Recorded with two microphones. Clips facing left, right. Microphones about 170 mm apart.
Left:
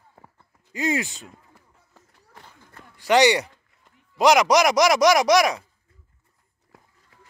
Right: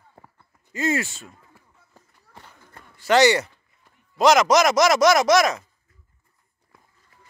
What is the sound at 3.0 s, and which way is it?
Speech, 15° left (ahead or behind).